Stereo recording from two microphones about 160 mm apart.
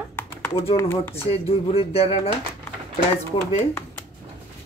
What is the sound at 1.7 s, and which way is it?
Speech, 40° left (ahead or behind).